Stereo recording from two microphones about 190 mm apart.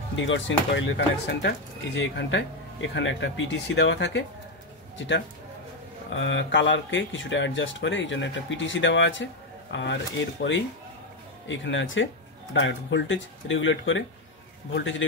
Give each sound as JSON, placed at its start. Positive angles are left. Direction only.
{"t": 0.1, "sound": "speech", "side_deg": 80}
{"t": 12.5, "sound": "speech", "side_deg": 75}